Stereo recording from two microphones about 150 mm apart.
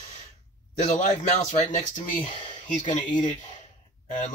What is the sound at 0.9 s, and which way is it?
Speech, 50° left (ahead or behind).